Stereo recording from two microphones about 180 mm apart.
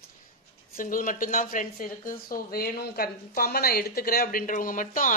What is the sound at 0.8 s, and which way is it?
Speech, 50° left (ahead or behind).